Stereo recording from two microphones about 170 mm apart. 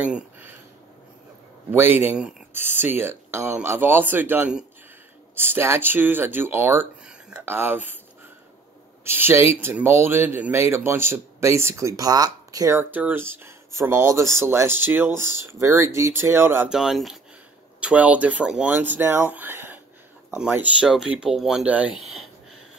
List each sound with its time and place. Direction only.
0.0 s a sound: 10° right (ahead or behind)
1.7 s speech: 15° right (ahead or behind)
9.0 s speech: 15° right (ahead or behind)